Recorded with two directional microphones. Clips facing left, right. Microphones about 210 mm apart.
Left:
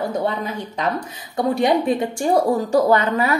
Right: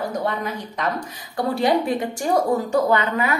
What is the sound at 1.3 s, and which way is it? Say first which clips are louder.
A woman's voice: left 2 dB; 20° left (ahead or behind).